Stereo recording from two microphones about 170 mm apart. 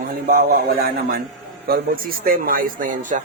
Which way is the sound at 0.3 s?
55° right (ahead or behind).